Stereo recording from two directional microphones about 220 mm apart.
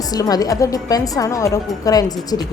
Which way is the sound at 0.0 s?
15° left (ahead or behind).